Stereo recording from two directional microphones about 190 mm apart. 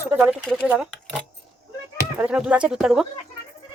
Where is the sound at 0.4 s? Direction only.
5° left (ahead or behind).